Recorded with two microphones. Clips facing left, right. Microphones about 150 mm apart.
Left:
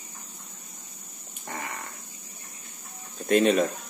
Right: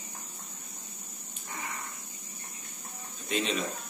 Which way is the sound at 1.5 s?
65° left (ahead or behind).